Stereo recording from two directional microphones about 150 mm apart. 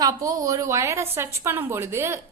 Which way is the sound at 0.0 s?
25° right (ahead or behind).